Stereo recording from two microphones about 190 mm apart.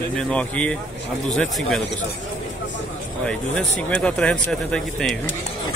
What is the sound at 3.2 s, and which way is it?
A man's voice, 5° left (ahead or behind).